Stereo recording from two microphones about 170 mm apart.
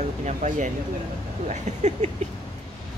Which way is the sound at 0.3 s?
45° right (ahead or behind).